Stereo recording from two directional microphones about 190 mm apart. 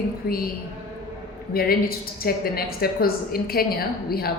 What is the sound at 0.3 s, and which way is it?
Speech, 50° left (ahead or behind).